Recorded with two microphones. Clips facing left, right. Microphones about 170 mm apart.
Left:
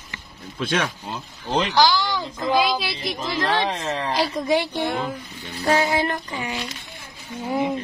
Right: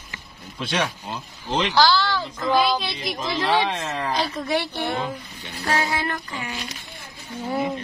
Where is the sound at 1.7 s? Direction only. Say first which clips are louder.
Right 1 dB; 15° left (ahead or behind).